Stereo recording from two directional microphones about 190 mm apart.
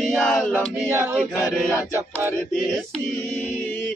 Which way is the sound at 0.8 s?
15° right (ahead or behind).